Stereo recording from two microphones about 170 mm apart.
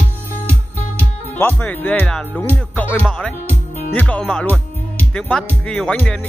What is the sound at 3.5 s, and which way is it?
Music, 40° right (ahead or behind).